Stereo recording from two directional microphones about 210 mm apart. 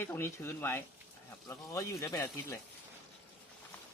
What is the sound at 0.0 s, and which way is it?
Speech, 10° left (ahead or behind).